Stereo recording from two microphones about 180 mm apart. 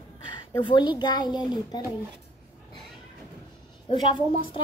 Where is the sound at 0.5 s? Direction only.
25° left (ahead or behind).